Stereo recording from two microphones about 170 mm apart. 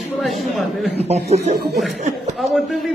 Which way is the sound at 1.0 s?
40° right (ahead or behind).